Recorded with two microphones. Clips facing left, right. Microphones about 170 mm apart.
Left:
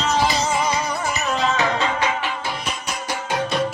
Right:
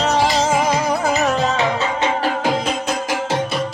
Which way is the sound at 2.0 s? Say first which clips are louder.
Right 4 dB; 35° right (ahead or behind).